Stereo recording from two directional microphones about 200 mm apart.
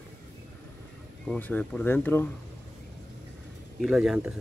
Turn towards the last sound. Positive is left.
turn(degrees=-5)  # may be behind; listen again after turning